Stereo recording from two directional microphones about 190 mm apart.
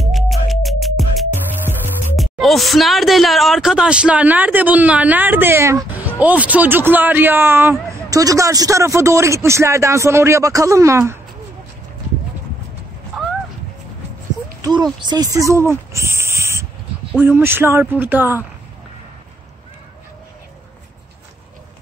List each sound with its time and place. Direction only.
0.0 s music: centre (ahead or behind)
2.1 s speech: centre (ahead or behind); by 11.1 s 15° right (ahead or behind)
14.6 s speech: 20° right (ahead or behind)